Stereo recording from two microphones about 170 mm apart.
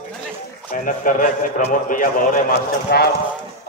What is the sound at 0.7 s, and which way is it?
A man's voice, 50° left (ahead or behind).